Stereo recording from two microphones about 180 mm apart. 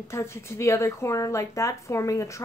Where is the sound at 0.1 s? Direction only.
15° left (ahead or behind).